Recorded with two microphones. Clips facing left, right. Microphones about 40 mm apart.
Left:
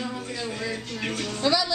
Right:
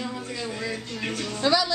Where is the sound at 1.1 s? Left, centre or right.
Left.